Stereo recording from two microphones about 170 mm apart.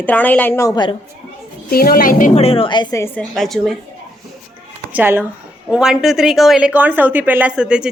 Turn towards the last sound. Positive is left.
turn(degrees=-5)  # may be behind; listen again after turning